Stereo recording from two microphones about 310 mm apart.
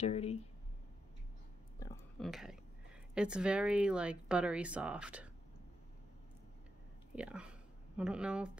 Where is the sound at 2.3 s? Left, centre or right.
Centre.